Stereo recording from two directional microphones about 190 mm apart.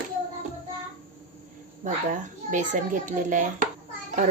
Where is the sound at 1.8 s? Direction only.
40° right (ahead or behind).